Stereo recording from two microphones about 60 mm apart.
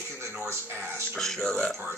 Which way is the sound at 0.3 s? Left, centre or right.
Right.